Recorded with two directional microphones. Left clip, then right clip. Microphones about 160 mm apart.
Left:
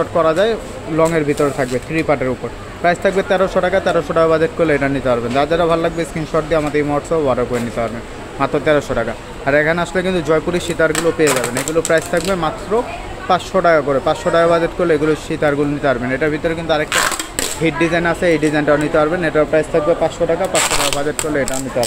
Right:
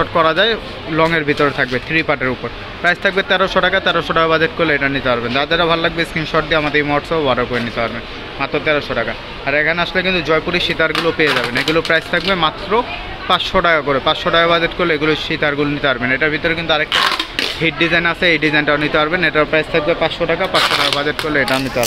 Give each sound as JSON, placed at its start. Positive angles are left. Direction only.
{"t": 0.2, "sound": "speech", "side_deg": 15}
{"t": 8.4, "sound": "speech", "side_deg": 30}
{"t": 13.7, "sound": "speech", "side_deg": 5}
{"t": 14.0, "sound": "speech", "side_deg": 20}
{"t": 17.9, "sound": "speech", "side_deg": 15}